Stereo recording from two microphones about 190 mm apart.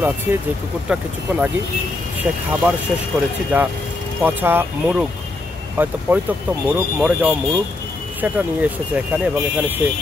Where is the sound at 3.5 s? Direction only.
10° right (ahead or behind).